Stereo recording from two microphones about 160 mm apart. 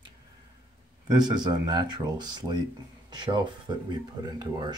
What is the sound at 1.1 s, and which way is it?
Speech, 25° right (ahead or behind).